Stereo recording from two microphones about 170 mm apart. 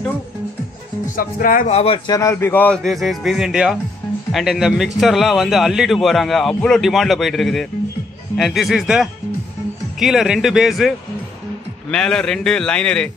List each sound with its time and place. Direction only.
1.0 s speech: 50° left (ahead or behind)
1.7 s speech: 35° left (ahead or behind)
2.0 s a man's voice: 20° left (ahead or behind)